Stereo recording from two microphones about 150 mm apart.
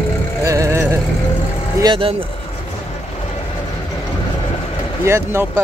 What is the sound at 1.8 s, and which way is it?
Speech, 35° right (ahead or behind).